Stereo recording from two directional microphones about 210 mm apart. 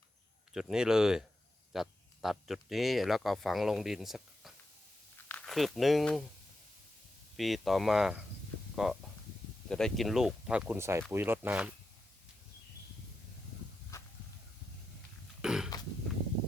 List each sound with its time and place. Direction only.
0.5 s speech: 5° right (ahead or behind)
7.3 s speech: centre (ahead or behind)
15.4 s burping: 5° right (ahead or behind)